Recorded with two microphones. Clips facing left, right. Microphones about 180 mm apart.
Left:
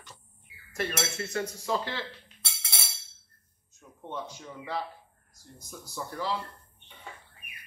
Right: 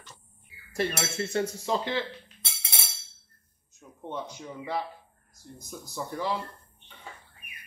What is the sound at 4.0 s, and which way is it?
Speech, 15° right (ahead or behind).